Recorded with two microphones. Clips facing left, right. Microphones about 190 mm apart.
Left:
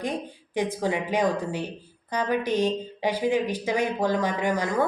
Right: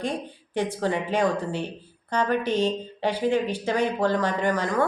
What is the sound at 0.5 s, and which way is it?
Speech, 15° left (ahead or behind).